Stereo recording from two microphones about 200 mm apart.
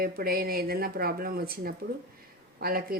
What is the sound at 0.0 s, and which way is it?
A woman's voice, 50° right (ahead or behind).